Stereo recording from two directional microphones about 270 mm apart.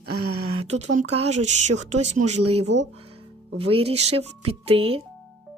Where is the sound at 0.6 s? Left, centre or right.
Right.